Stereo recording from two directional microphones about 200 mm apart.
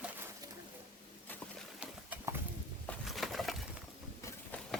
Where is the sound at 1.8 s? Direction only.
10° right (ahead or behind).